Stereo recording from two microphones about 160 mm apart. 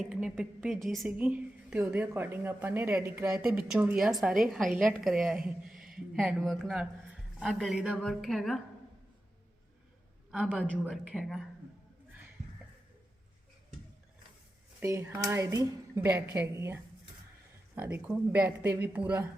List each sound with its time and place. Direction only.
0.0 s a woman's voice: 5° right (ahead or behind)
10.3 s speech: 5° right (ahead or behind)
10.6 s a woman's voice: 5° left (ahead or behind)
14.8 s speech: 15° right (ahead or behind)